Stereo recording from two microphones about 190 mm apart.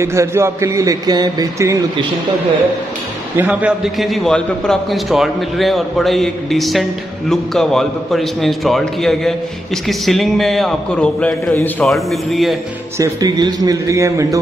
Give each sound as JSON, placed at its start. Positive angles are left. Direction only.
{"t": 0.0, "sound": "a man's voice", "side_deg": -15}
{"t": 3.3, "sound": "a man's voice", "side_deg": -5}
{"t": 12.9, "sound": "a man's voice", "side_deg": -15}